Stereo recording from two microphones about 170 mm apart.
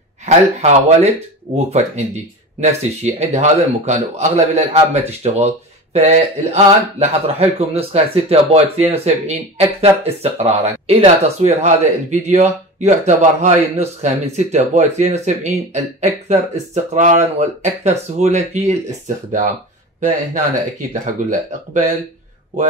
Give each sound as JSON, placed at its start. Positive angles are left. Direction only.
{"t": 0.2, "sound": "speech", "side_deg": -40}
{"t": 20.9, "sound": "speech", "side_deg": -45}